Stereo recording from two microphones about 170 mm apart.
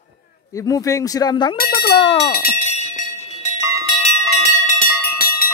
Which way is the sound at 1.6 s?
60° left (ahead or behind).